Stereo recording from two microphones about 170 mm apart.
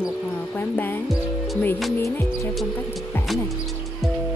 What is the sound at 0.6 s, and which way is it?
Speech, 10° left (ahead or behind).